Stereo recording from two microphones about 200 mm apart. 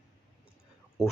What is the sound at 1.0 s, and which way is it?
Speech, centre (ahead or behind).